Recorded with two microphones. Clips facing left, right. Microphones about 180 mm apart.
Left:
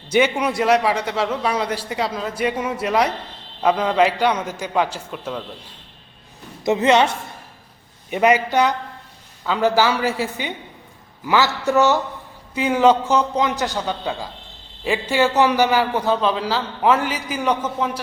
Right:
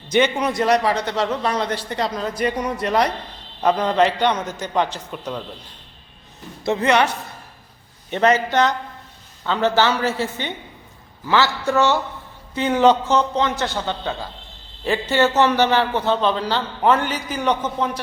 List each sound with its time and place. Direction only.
0.1 s a man's voice: 10° left (ahead or behind)
6.7 s a woman's voice: 20° left (ahead or behind)
8.1 s a man's voice: 10° left (ahead or behind)
11.6 s a man's voice: 15° left (ahead or behind)
12.5 s a man's voice: 5° left (ahead or behind)